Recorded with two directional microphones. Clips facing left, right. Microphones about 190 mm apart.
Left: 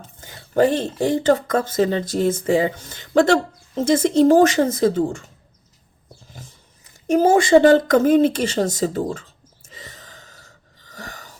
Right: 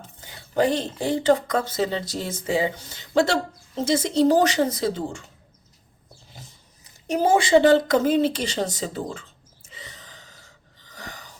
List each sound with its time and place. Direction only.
0.2 s speech: 45° left (ahead or behind)
7.1 s speech: 50° left (ahead or behind)
9.6 s gasp: 45° left (ahead or behind)
10.8 s a sound: 45° left (ahead or behind)